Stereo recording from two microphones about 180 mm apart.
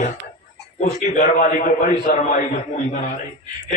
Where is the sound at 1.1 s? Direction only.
45° left (ahead or behind).